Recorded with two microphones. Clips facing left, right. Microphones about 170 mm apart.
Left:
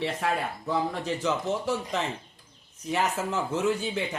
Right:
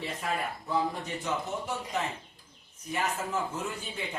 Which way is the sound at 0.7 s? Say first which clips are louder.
Left 3 dB; 90° left.